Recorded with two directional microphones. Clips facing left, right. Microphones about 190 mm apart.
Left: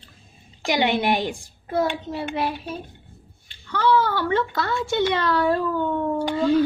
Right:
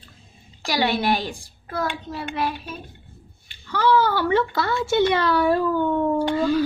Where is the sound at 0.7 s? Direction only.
20° left (ahead or behind).